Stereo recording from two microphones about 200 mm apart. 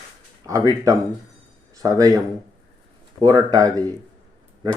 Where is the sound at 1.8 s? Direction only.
15° right (ahead or behind).